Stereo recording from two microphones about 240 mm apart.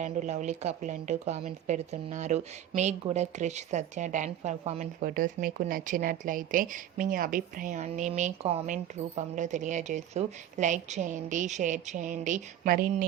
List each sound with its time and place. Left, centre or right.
0.0 s speech: right